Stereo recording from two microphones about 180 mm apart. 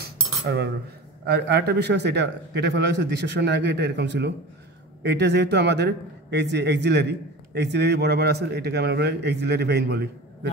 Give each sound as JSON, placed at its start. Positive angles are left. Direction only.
{"t": 0.0, "sound": "cutlery", "side_deg": -65}
{"t": 1.2, "sound": "a man's voice", "side_deg": -65}